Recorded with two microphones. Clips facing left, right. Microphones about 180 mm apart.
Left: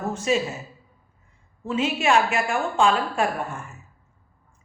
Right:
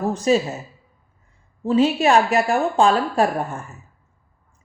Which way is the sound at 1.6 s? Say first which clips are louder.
Right 6 dB; 35° right (ahead or behind).